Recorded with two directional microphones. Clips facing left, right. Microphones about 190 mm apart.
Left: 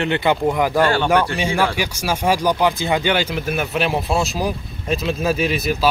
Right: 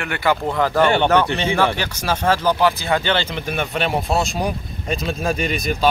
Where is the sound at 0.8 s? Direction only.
20° right (ahead or behind).